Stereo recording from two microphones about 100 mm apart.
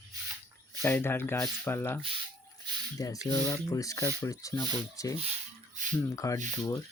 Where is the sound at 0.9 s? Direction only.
20° left (ahead or behind).